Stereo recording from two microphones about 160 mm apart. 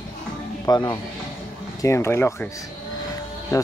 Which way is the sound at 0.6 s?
25° left (ahead or behind).